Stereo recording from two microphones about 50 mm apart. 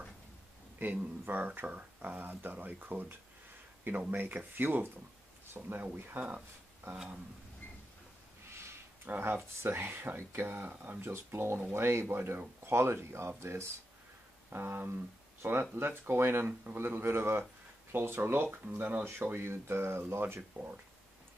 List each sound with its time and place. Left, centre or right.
0.7 s speech: right
5.5 s speech: right
5.9 s speech: right
8.5 s a sound: right
9.1 s speech: right
14.5 s speech: right
19.0 s speech: right
20.5 s speech: right